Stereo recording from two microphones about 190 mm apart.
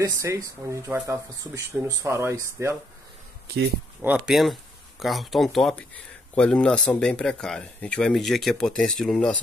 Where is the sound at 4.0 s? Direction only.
5° right (ahead or behind).